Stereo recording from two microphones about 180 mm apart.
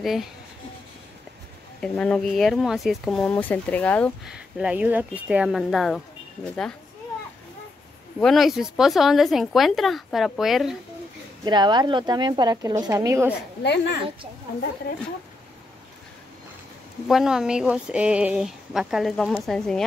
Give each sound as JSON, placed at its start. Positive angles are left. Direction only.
{"t": 0.0, "sound": "speech", "side_deg": 0}
{"t": 1.8, "sound": "speech", "side_deg": 5}
{"t": 4.2, "sound": "speech", "side_deg": -5}
{"t": 8.2, "sound": "speech", "side_deg": 0}
{"t": 11.4, "sound": "speech", "side_deg": -25}
{"t": 13.6, "sound": "speech", "side_deg": 70}
{"t": 17.1, "sound": "speech", "side_deg": -5}